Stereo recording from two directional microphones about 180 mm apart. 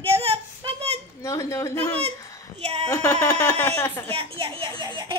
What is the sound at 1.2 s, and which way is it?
Speech, 15° left (ahead or behind).